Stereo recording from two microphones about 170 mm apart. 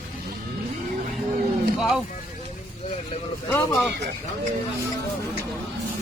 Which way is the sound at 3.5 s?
15° left (ahead or behind).